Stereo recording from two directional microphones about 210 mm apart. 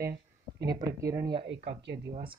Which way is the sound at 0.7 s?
15° right (ahead or behind).